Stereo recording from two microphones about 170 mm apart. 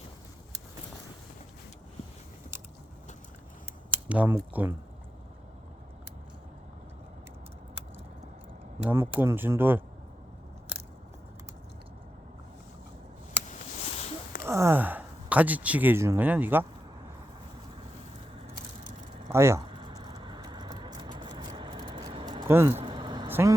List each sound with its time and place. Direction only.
4.1 s speech: 10° right (ahead or behind)
8.8 s speech: 10° right (ahead or behind)
13.8 s a sound: 35° left (ahead or behind)
14.4 s a sound: 15° right (ahead or behind)
19.3 s speech: 15° right (ahead or behind)
19.8 s vehicle: 25° right (ahead or behind)
22.4 s speech: 15° right (ahead or behind)
22.7 s vehicle: 30° right (ahead or behind)
23.3 s speech: 15° right (ahead or behind)